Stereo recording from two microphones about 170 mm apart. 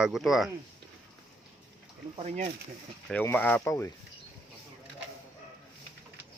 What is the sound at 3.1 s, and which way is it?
Speech, 10° left (ahead or behind).